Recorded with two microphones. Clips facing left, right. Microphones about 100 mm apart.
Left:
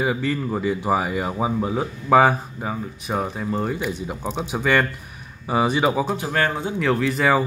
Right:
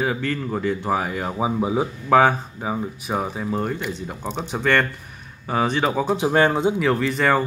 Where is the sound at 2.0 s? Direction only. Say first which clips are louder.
Left 1 dB; 5° left (ahead or behind).